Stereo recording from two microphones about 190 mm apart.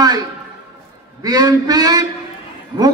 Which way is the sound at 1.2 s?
20° right (ahead or behind).